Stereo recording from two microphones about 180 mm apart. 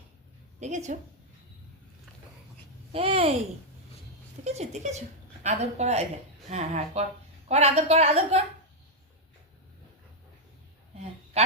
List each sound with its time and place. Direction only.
0.6 s a woman's voice: 40° right (ahead or behind)
2.9 s a woman's voice: 30° right (ahead or behind)
4.4 s a woman's voice: 35° right (ahead or behind)
11.3 s a sound: 35° right (ahead or behind)